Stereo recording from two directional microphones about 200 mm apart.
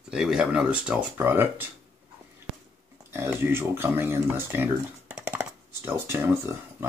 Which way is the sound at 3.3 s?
10° right (ahead or behind).